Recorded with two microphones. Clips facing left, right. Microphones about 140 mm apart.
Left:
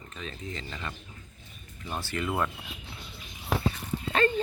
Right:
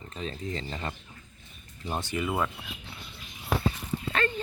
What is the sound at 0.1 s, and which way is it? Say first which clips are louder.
Speech: right 5 dB; 35° right (ahead or behind).